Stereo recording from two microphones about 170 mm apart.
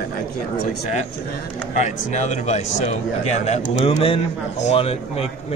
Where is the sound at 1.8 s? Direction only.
45° left (ahead or behind).